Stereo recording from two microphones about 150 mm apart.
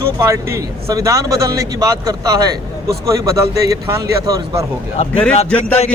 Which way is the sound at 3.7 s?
25° right (ahead or behind).